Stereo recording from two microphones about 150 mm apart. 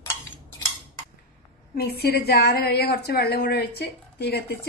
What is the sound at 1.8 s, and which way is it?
A woman's voice, 90° left.